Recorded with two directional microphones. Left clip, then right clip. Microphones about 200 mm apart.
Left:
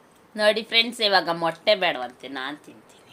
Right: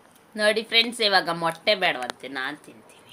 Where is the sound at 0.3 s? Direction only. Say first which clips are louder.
Left 1 dB; 10° left (ahead or behind).